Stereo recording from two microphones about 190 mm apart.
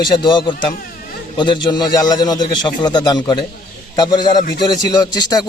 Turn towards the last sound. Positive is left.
turn(degrees=20)  # may be behind; listen again after turning